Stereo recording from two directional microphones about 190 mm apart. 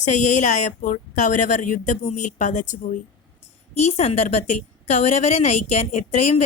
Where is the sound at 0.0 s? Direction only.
40° left (ahead or behind).